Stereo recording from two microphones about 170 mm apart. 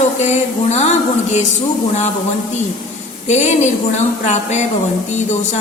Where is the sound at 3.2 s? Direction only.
40° left (ahead or behind).